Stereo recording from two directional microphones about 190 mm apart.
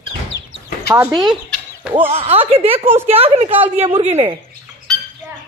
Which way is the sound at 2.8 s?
10° right (ahead or behind).